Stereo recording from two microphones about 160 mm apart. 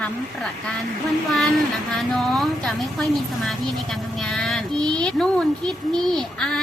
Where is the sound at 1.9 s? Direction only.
Centre (ahead or behind).